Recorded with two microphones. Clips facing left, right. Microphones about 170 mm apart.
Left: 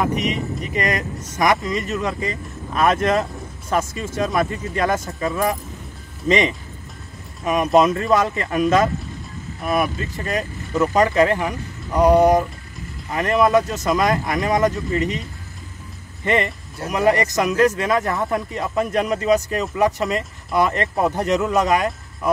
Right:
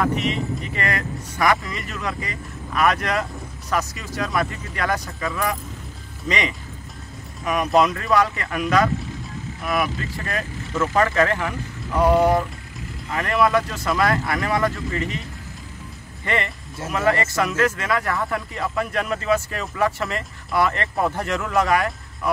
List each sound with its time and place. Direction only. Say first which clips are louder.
0.0 s speech: left 1 dB; 15° left (ahead or behind)
16.9 s speech: left 3 dB; 15° left (ahead or behind)